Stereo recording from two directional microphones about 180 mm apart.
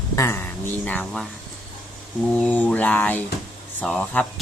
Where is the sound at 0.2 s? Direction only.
15° left (ahead or behind).